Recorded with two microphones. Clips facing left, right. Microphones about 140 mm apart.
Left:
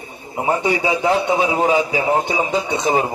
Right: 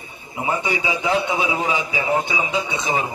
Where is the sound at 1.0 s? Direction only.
45° left (ahead or behind).